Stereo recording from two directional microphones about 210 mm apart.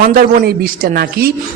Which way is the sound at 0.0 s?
40° right (ahead or behind).